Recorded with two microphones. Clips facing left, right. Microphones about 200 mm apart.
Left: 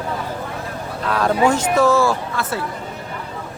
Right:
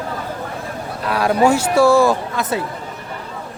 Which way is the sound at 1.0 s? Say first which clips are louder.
Right 2 dB; 10° right (ahead or behind).